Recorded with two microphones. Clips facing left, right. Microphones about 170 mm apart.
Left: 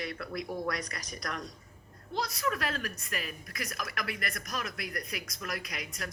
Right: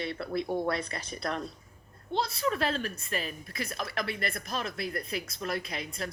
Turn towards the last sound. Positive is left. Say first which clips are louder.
# right 4 dB
turn(degrees=-25)  # may be behind; listen again after turning